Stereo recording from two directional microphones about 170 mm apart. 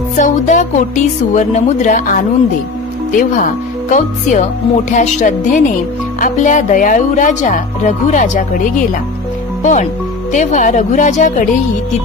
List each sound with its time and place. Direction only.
0.2 s speech: 45° left (ahead or behind)